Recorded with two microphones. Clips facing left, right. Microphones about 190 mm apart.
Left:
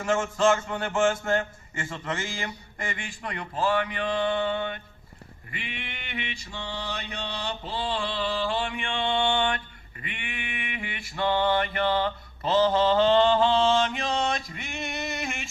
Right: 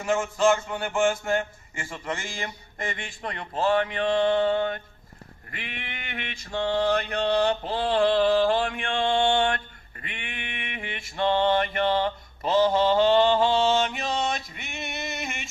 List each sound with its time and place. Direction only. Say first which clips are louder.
0.0 s speech: right 1 dB; 5° right (ahead or behind)
2.4 s speech: right 1 dB; 35° right (ahead or behind)
5.5 s mantra: even; 50° right (ahead or behind)
10.0 s speech: left 1 dB; 35° right (ahead or behind)
10.8 s mantra: right 3 dB; 30° right (ahead or behind)
12.4 s speech: right 1 dB; 15° right (ahead or behind)
13.8 s a sound: even; 5° right (ahead or behind)